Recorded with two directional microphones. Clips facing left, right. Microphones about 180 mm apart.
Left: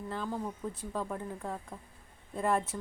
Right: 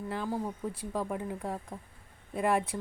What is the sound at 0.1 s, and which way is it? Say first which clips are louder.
Speech: right 2 dB; 10° right (ahead or behind).